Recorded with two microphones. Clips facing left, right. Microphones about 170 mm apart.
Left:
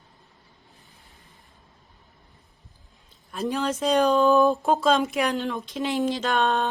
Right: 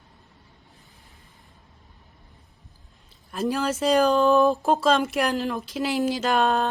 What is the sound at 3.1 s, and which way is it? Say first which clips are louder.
Speech: right 2 dB; centre (ahead or behind).